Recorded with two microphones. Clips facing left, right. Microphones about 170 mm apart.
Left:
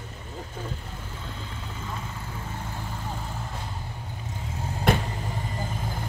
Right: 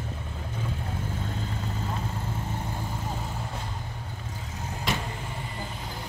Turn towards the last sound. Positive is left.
turn(degrees=55)  # may be behind; listen again after turning